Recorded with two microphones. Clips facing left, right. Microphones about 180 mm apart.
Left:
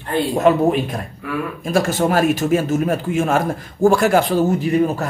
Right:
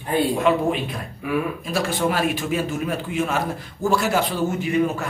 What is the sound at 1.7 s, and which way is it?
A man's voice, 45° left (ahead or behind).